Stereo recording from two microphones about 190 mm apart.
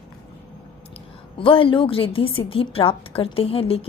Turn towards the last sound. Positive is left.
turn(degrees=30)  # may be behind; listen again after turning